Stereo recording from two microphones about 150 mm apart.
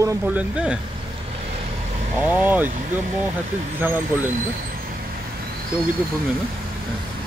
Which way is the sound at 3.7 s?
15° right (ahead or behind).